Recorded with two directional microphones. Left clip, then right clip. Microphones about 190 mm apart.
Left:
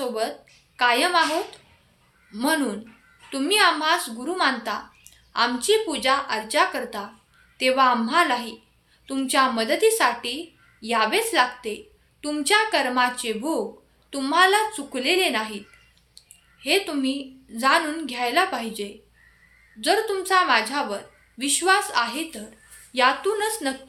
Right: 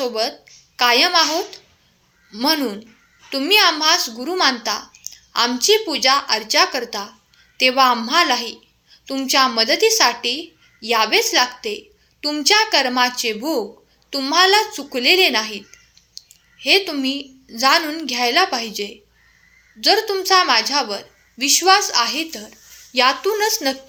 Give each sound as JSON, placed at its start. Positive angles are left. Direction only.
{"t": 0.0, "sound": "a woman's voice", "side_deg": -25}
{"t": 2.3, "sound": "a woman's voice", "side_deg": -20}